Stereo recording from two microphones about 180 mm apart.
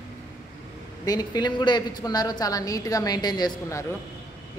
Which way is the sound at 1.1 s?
20° left (ahead or behind).